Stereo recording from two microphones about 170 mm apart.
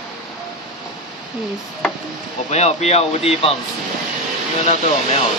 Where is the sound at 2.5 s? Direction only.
40° left (ahead or behind).